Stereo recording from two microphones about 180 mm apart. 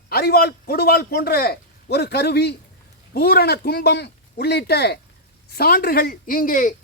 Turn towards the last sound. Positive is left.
turn(degrees=50)  # may be behind; listen again after turning